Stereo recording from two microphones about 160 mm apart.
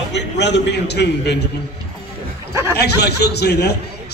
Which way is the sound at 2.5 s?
15° right (ahead or behind).